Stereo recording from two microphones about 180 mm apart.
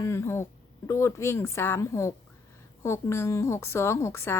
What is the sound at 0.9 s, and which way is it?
A woman's voice, 15° left (ahead or behind).